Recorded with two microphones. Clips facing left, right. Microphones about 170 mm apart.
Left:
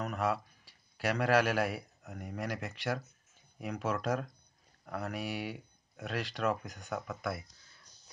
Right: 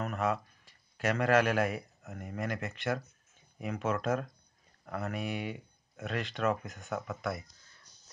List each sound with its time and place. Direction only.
0.0 s speech: centre (ahead or behind)